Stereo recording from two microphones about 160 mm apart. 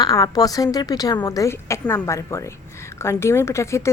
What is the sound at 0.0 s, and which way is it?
A woman's voice, 25° left (ahead or behind).